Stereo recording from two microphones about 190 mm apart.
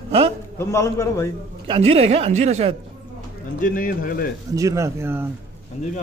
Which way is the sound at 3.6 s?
45° left (ahead or behind).